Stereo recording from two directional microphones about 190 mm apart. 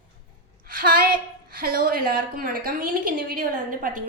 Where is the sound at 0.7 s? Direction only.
50° right (ahead or behind).